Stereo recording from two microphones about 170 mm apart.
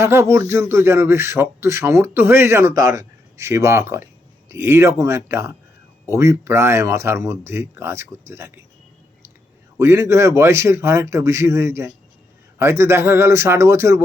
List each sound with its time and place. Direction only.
0.0 s speech: 15° right (ahead or behind)
9.7 s speech: 15° right (ahead or behind)